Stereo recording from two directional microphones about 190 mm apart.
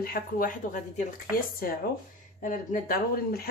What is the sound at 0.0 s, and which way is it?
Speech, 50° left (ahead or behind).